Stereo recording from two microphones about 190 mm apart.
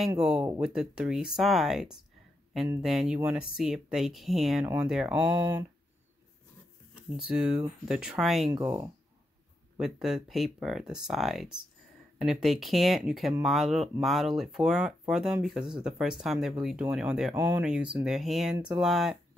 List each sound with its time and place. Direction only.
0.2 s speech: 5° right (ahead or behind)
7.9 s speech: centre (ahead or behind)
8.6 s speech: 15° right (ahead or behind)
9.8 s speech: centre (ahead or behind)